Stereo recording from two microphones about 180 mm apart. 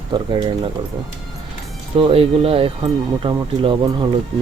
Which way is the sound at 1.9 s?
30° right (ahead or behind).